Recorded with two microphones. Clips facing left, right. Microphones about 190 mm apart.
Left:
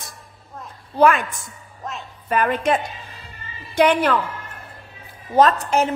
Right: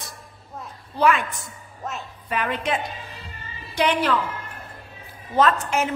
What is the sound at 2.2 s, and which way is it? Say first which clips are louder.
A woman's voice: left 6 dB; 45° left (ahead or behind).